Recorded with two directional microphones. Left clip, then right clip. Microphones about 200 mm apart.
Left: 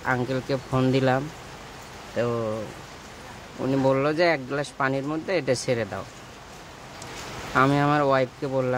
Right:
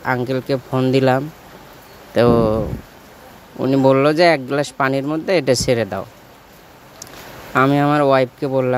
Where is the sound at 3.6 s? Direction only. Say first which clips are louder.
Right 9 dB; 30° right (ahead or behind).